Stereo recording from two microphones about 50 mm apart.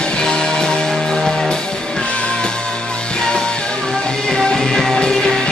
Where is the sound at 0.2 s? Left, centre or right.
Centre.